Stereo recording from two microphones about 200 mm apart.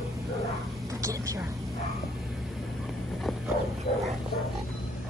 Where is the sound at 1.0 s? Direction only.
15° right (ahead or behind).